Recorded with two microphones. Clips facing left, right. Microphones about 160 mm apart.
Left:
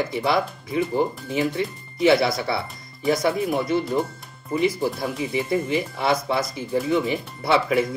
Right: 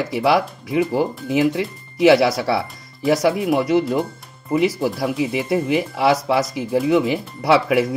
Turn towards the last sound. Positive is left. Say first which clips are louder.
# right 4 dB
turn(degrees=-85)